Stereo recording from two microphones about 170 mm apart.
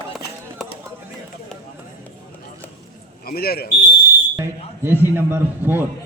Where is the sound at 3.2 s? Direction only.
65° left (ahead or behind).